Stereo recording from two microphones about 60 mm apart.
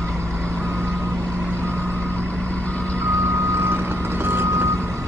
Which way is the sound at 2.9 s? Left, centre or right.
Right.